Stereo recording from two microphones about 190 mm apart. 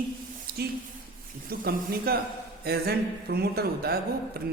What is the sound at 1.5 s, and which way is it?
Speech, 55° right (ahead or behind).